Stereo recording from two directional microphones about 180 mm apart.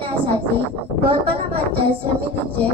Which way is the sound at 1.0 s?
30° right (ahead or behind).